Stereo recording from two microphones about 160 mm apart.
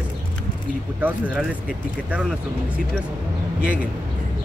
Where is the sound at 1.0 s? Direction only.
10° right (ahead or behind).